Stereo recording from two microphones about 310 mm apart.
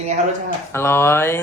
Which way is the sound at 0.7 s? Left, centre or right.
Centre.